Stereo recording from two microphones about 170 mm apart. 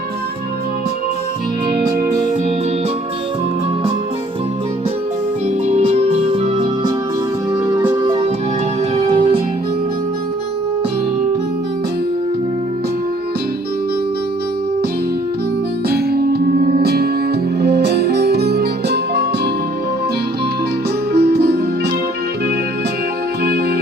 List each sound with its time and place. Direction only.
5.6 s music: 40° right (ahead or behind); by 8.2 s 20° right (ahead or behind)
9.0 s music: 35° right (ahead or behind)
16.0 s music: 70° right (ahead or behind)
21.1 s music: 65° right (ahead or behind)